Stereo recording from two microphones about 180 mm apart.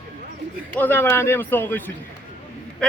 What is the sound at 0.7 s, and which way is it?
A man's voice, 10° left (ahead or behind).